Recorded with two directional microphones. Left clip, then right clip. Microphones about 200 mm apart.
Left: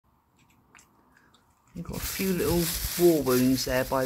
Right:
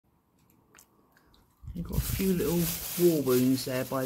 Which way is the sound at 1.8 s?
5° right (ahead or behind).